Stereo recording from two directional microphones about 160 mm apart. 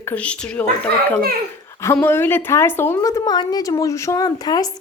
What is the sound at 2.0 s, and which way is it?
A woman's voice, 15° left (ahead or behind).